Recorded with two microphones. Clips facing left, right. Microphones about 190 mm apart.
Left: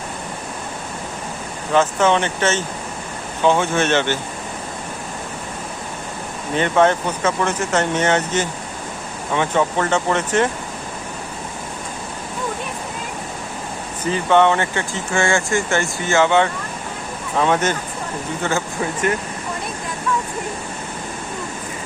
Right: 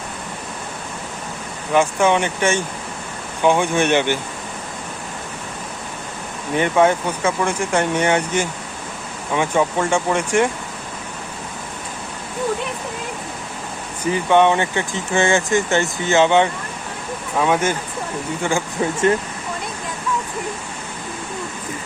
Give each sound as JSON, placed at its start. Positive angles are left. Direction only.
{"t": 1.7, "sound": "speech", "side_deg": -10}
{"t": 6.5, "sound": "speech", "side_deg": -10}
{"t": 14.0, "sound": "speech", "side_deg": -15}
{"t": 18.8, "sound": "speech", "side_deg": -25}